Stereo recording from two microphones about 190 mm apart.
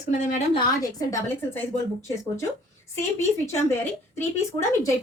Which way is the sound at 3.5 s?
15° left (ahead or behind).